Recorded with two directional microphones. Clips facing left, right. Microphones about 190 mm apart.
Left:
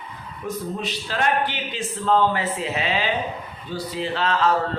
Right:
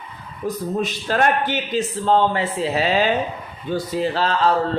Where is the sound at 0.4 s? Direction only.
45° right (ahead or behind).